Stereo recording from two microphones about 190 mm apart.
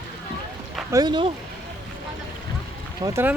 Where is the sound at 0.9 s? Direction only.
20° right (ahead or behind).